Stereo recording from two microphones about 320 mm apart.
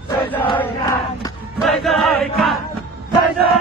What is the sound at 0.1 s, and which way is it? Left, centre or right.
Battle cry, centre.